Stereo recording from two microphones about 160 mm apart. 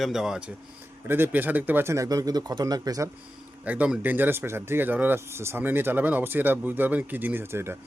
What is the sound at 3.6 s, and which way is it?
Speech, 10° right (ahead or behind).